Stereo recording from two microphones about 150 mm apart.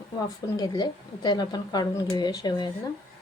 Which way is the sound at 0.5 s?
25° left (ahead or behind).